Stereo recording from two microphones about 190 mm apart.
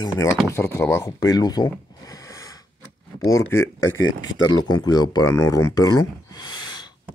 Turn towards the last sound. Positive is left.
turn(degrees=20)  # may be behind; listen again after turning